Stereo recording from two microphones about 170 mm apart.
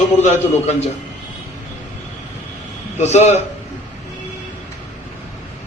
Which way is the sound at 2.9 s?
40° left (ahead or behind).